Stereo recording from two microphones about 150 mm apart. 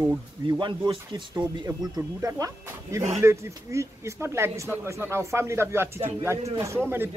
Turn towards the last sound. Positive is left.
turn(degrees=-15)  # may be behind; listen again after turning